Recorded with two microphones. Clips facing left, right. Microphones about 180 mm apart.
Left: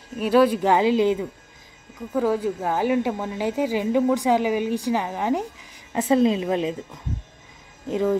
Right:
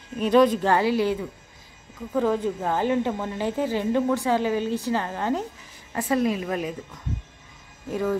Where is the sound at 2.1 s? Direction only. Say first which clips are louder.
Left 1 dB; 5° left (ahead or behind).